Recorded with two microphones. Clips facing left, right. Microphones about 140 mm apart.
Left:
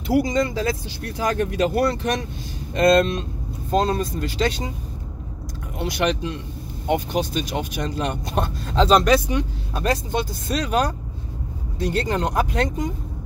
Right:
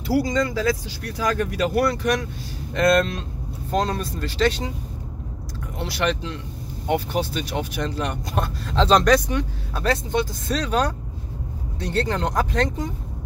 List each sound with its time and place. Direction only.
0.1 s speech: 20° left (ahead or behind)
5.8 s speech: 15° left (ahead or behind)
8.8 s speech: 10° left (ahead or behind)